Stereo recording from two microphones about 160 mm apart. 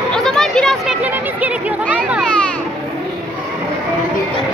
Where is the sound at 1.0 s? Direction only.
10° right (ahead or behind).